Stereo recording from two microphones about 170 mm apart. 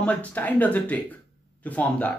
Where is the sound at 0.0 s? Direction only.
10° left (ahead or behind).